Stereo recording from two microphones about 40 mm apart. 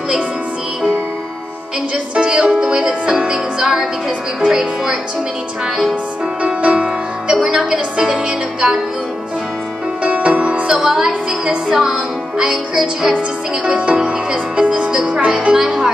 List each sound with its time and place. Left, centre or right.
2.1 s music: right
6.4 s music: right
7.3 s music: centre
10.0 s music: right
10.7 s a woman's voice: centre
11.0 s music: centre
15.1 s speech: right
15.5 s music: centre